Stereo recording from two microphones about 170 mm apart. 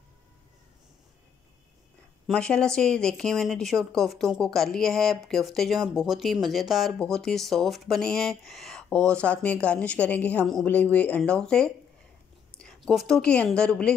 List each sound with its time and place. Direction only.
2.2 s a woman's voice: 5° left (ahead or behind)